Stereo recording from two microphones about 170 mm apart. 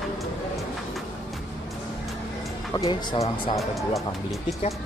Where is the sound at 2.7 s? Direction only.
20° left (ahead or behind).